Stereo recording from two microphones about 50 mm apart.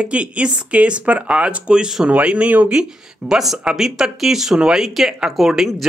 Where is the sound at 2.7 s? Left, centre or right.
Centre.